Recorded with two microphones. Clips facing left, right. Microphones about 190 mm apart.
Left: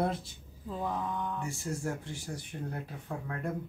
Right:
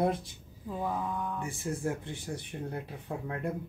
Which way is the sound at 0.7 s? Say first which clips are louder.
Right 1 dB; 10° right (ahead or behind).